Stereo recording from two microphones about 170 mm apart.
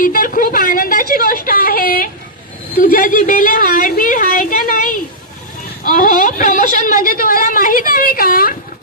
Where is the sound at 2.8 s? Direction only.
55° left (ahead or behind).